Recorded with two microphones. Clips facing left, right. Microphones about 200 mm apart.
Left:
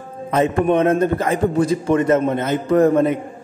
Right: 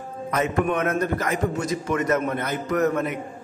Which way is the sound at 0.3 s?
25° left (ahead or behind).